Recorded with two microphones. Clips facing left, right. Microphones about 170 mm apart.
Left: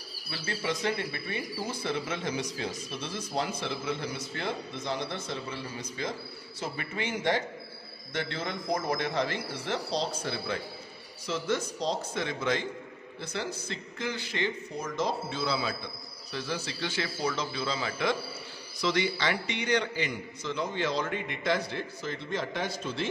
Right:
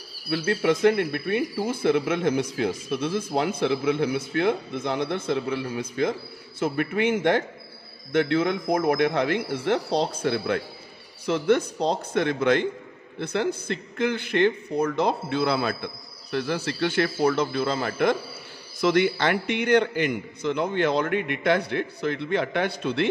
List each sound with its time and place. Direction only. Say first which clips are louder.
0.3 s speech: right 11 dB; 55° right (ahead or behind)